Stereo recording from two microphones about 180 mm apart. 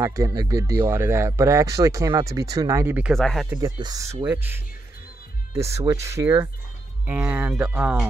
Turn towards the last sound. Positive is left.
turn(degrees=-5)  # may be behind; listen again after turning